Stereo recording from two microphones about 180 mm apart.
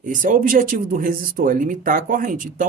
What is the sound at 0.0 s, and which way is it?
Speech, 45° right (ahead or behind).